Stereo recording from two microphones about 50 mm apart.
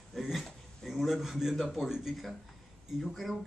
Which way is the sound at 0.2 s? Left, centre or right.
Centre.